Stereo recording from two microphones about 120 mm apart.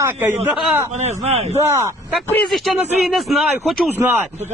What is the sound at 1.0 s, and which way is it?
Speech, 65° right (ahead or behind).